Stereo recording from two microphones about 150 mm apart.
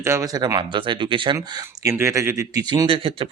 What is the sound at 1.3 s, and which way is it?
Speech, 20° right (ahead or behind).